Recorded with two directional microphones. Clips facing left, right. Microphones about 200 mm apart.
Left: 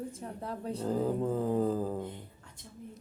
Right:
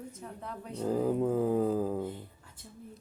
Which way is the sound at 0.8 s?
10° right (ahead or behind).